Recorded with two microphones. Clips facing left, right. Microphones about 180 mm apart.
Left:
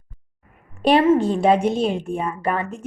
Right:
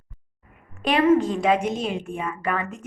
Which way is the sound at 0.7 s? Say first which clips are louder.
Left 3 dB; 30° left (ahead or behind).